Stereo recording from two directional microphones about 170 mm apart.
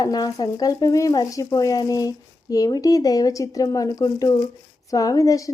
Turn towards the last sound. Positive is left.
turn(degrees=20)  # may be behind; listen again after turning